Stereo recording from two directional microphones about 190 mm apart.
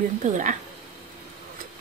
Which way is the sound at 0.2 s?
40° right (ahead or behind).